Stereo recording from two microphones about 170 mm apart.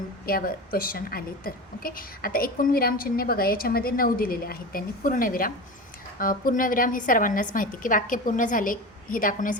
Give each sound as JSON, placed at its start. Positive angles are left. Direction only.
{"t": 0.3, "sound": "a woman's voice", "side_deg": 60}